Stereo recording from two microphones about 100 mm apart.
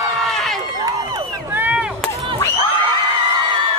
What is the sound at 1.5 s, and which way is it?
Chop, 15° right (ahead or behind).